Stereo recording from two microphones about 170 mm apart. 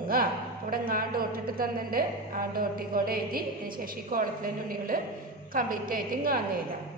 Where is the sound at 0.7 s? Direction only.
60° right (ahead or behind).